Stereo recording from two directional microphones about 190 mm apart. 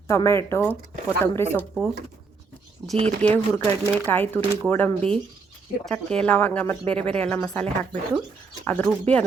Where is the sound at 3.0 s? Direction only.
5° left (ahead or behind).